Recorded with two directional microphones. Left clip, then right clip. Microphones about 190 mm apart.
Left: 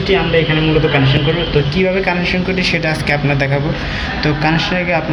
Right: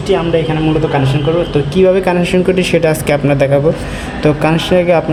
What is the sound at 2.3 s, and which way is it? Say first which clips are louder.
Speech: right 5 dB; 60° right (ahead or behind).